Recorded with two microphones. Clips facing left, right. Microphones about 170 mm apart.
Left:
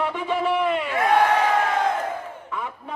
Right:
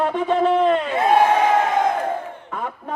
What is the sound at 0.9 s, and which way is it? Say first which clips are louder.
Speech: right 1 dB; 25° right (ahead or behind).